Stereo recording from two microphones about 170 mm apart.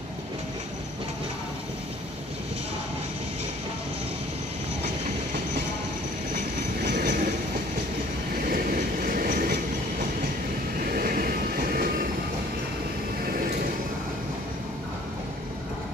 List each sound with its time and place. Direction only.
6.8 s train: 65° right (ahead or behind)
8.4 s train: 60° right (ahead or behind)
10.8 s train: 60° right (ahead or behind)